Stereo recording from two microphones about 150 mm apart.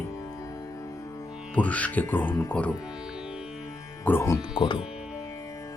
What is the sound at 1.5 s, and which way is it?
Speech, 10° left (ahead or behind).